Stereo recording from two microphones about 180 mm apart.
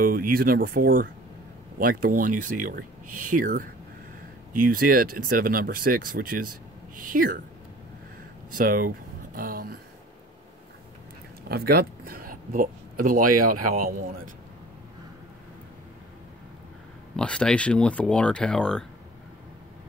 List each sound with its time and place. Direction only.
0.0 s speech: 55° right (ahead or behind)
8.5 s a sound: 50° right (ahead or behind)
11.4 s speech: 60° right (ahead or behind)
17.2 s speech: 5° left (ahead or behind)